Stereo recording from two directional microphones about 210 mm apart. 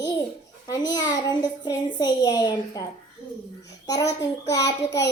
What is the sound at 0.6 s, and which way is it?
A child's voice, 20° left (ahead or behind).